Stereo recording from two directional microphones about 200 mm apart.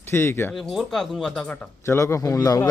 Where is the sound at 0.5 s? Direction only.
Centre (ahead or behind).